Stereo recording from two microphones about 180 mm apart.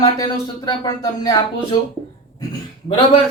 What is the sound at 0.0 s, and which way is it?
Speech, 20° left (ahead or behind).